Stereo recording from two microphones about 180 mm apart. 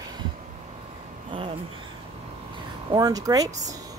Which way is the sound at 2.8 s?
20° right (ahead or behind).